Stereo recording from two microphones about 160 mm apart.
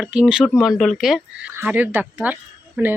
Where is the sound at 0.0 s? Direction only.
5° right (ahead or behind).